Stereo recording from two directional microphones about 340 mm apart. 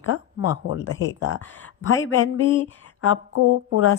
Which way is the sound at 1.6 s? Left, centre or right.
Left.